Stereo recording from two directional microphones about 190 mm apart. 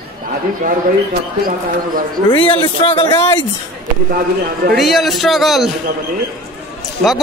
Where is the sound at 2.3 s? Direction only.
25° left (ahead or behind).